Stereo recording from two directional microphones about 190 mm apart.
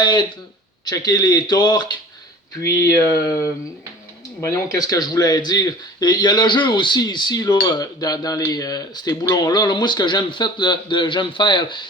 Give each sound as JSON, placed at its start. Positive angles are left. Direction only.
{"t": 0.0, "sound": "speech", "side_deg": 25}
{"t": 2.6, "sound": "a sound", "side_deg": 15}
{"t": 4.4, "sound": "speech", "side_deg": 15}